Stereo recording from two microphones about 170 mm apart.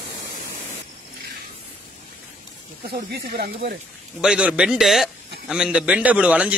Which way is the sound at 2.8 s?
65° right (ahead or behind).